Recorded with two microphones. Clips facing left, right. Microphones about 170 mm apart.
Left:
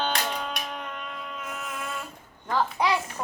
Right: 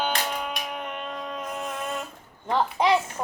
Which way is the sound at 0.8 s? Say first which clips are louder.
Right 3 dB; 20° right (ahead or behind).